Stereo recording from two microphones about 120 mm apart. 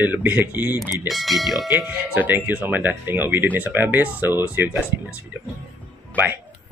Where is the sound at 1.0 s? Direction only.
Centre (ahead or behind).